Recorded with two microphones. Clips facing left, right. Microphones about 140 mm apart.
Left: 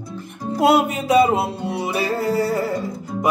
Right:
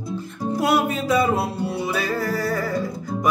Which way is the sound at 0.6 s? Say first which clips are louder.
Left 4 dB; 25° left (ahead or behind).